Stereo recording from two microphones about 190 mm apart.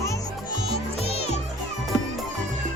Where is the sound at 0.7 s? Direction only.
30° left (ahead or behind).